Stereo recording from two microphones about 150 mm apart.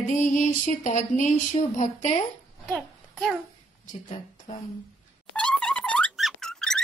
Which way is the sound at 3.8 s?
55° left (ahead or behind).